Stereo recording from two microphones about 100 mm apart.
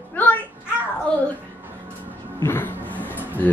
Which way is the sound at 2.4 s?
25° left (ahead or behind).